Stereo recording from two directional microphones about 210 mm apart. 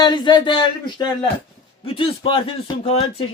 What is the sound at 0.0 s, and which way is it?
A man's voice, 20° left (ahead or behind).